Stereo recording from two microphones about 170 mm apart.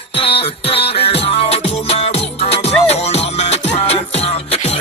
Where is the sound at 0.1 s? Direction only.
35° left (ahead or behind).